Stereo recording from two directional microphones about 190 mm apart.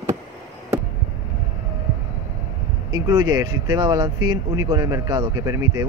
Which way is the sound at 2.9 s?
20° right (ahead or behind).